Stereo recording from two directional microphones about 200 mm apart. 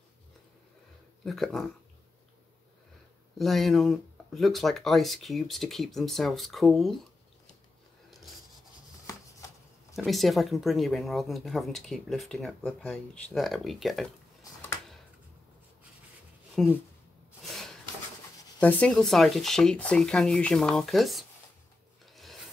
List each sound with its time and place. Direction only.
1.2 s speech: centre (ahead or behind)
3.3 s speech: centre (ahead or behind)
9.9 s speech: centre (ahead or behind)
16.6 s speech: centre (ahead or behind)
17.4 s a sound: centre (ahead or behind)
18.6 s speech: 5° left (ahead or behind)
22.0 s filing: centre (ahead or behind)